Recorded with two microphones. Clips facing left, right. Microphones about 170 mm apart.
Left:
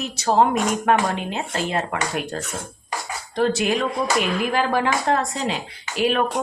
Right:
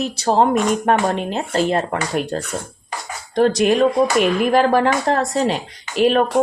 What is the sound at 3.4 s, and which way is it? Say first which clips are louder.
Speech: right 6 dB; 40° right (ahead or behind).